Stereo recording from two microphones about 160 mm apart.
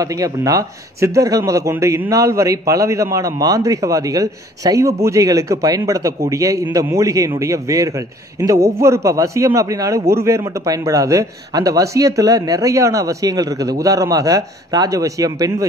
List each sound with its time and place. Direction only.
0.0 s a man's voice: 20° right (ahead or behind)